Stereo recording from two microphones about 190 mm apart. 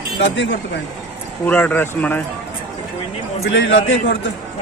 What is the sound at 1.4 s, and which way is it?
Speech, 10° left (ahead or behind).